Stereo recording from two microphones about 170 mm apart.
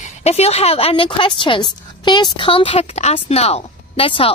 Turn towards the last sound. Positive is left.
turn(degrees=30)  # may be behind; listen again after turning